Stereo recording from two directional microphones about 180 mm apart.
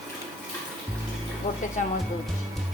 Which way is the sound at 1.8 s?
40° left (ahead or behind).